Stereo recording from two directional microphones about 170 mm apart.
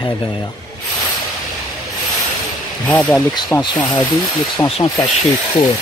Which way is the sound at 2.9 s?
10° left (ahead or behind).